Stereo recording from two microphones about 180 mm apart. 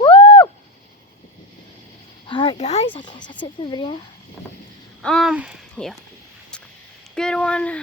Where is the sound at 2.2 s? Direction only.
25° left (ahead or behind).